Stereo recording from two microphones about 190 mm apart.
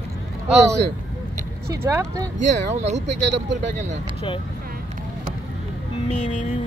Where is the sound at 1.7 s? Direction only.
15° right (ahead or behind).